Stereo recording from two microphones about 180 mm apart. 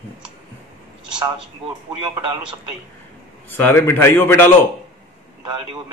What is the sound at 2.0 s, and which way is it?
Speech, 25° right (ahead or behind).